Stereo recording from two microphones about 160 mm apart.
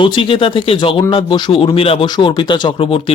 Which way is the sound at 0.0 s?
30° left (ahead or behind).